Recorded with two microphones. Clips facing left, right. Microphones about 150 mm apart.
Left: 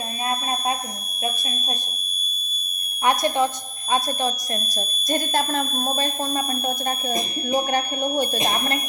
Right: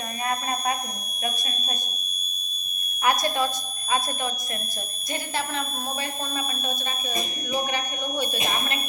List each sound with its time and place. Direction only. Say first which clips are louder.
0.3 s a sound: left 2 dB; 20° left (ahead or behind)
3.0 s a woman's voice: left 4 dB; 25° left (ahead or behind)
4.7 s speech: left 8 dB; 45° left (ahead or behind)